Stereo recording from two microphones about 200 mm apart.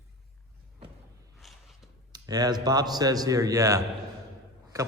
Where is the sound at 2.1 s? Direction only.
20° right (ahead or behind).